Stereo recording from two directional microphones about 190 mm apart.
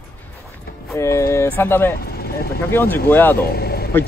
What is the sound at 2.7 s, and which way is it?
Speech, 10° left (ahead or behind).